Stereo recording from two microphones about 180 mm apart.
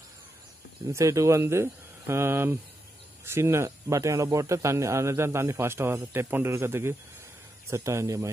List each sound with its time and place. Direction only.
0.8 s speech: 15° right (ahead or behind)